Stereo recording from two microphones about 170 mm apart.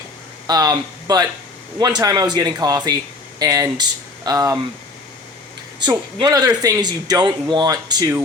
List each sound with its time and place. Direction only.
0.4 s speech: 20° right (ahead or behind)
5.8 s speech: 25° right (ahead or behind)